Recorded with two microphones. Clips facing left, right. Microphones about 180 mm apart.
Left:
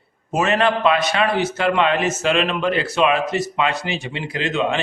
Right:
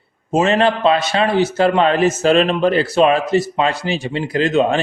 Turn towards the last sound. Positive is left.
turn(degrees=-40)  # may be behind; listen again after turning